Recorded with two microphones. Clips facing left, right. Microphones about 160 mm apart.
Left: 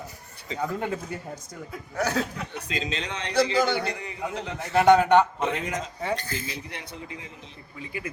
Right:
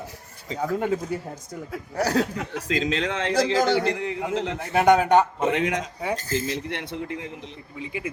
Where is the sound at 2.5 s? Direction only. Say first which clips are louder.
Right 6 dB; 90° right.